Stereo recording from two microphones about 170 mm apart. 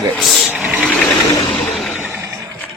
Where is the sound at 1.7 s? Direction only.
Centre (ahead or behind).